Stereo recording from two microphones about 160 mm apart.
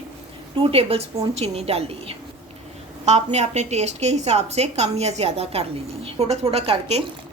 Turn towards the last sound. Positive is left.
turn(degrees=-40)  # may be behind; listen again after turning